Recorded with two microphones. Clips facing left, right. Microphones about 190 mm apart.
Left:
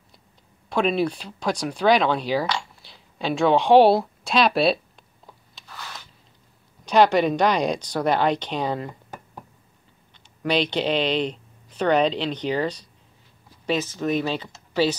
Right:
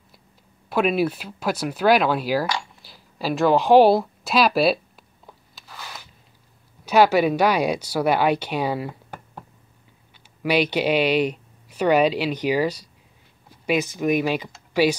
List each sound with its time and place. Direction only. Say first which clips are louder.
0.7 s speech: right 1 dB; 5° right (ahead or behind)
5.5 s a sound: even; centre (ahead or behind)
6.8 s speech: right 1 dB; 5° right (ahead or behind)
10.1 s speech: right 2 dB; 10° right (ahead or behind)